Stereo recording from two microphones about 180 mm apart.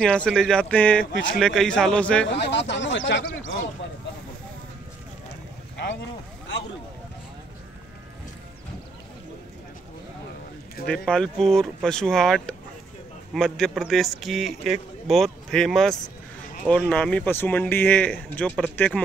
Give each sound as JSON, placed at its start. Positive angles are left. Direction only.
{"t": 0.0, "sound": "speech", "side_deg": 5}
{"t": 2.3, "sound": "speech", "side_deg": 70}
{"t": 10.9, "sound": "speech", "side_deg": 5}